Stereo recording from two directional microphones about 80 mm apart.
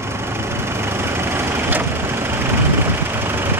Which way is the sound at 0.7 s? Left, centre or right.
Right.